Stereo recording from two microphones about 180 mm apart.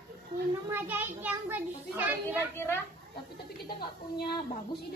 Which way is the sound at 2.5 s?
15° left (ahead or behind).